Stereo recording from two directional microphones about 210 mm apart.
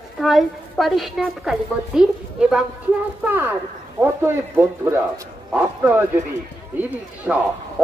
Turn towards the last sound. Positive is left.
turn(degrees=-5)  # may be behind; listen again after turning